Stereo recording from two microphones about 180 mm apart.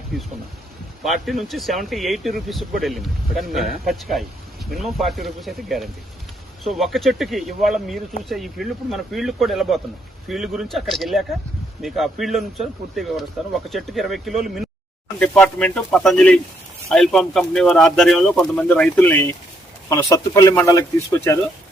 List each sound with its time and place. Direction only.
1.0 s speech: centre (ahead or behind); by 20.8 s 20° left (ahead or behind)